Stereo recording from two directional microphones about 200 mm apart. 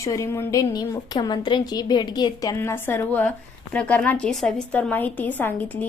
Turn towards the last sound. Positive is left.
turn(degrees=10)  # may be behind; listen again after turning